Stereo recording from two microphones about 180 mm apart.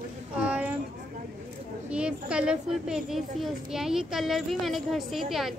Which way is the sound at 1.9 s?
5° right (ahead or behind).